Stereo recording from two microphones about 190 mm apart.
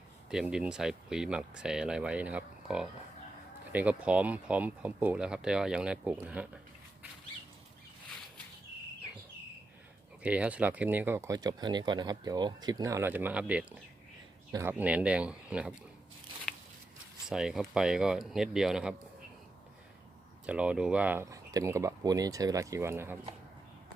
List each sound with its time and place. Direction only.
0.3 s speech: 5° right (ahead or behind)
10.2 s speech: 5° right (ahead or behind)
17.2 s speech: centre (ahead or behind)
20.5 s speech: 5° right (ahead or behind)